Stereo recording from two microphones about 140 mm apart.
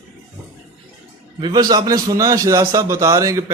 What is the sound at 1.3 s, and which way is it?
A man's voice, 30° right (ahead or behind).